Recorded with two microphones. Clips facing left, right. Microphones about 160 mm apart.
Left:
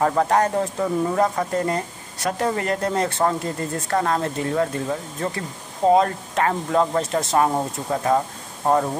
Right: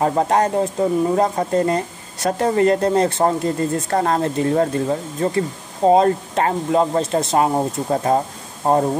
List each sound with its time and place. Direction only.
0.0 s speech: 25° right (ahead or behind)
7.9 s speech: 35° right (ahead or behind)